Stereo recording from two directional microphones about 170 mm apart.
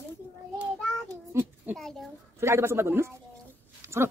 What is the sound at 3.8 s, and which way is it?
Dog, 15° right (ahead or behind).